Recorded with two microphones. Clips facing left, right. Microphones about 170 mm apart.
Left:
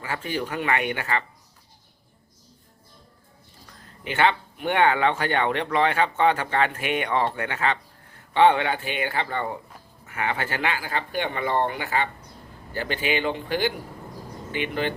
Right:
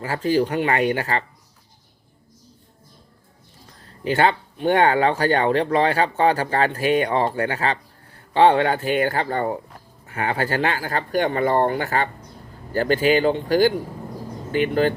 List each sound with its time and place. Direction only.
0.0 s speech: 35° right (ahead or behind)
4.0 s speech: 40° right (ahead or behind)